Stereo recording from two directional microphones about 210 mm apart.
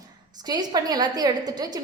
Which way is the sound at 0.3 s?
20° right (ahead or behind).